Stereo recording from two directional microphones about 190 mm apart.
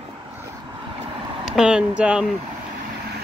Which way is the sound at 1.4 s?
5° right (ahead or behind).